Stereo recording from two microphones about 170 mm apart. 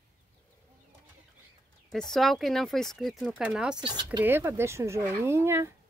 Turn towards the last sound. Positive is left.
turn(degrees=-15)  # may be behind; listen again after turning